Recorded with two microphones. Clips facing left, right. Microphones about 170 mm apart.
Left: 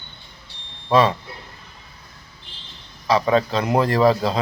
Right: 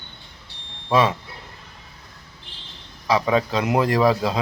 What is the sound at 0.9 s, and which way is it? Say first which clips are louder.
Speech: left 2 dB; 10° right (ahead or behind).